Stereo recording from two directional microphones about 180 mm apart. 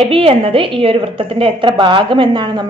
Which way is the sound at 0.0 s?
30° right (ahead or behind).